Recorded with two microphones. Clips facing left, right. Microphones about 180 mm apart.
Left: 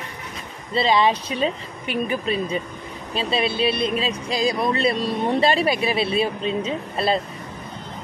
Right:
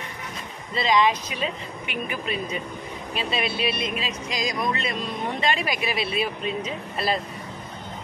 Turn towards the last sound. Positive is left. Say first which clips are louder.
# left 4 dB
turn(degrees=30)  # may be behind; listen again after turning